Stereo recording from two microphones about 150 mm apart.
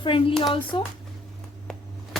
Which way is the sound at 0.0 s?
35° left (ahead or behind).